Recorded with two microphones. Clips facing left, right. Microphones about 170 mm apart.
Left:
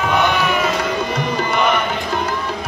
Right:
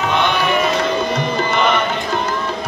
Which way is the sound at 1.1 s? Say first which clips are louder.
Right 1 dB; 10° left (ahead or behind).